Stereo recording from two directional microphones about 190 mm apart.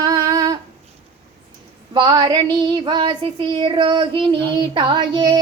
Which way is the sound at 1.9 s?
20° right (ahead or behind).